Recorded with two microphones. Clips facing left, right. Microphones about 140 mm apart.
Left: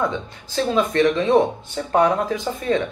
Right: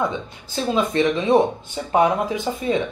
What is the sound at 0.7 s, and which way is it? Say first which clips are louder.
Speech: left 1 dB; 20° right (ahead or behind).